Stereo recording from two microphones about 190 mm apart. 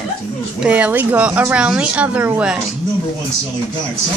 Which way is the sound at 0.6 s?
10° right (ahead or behind).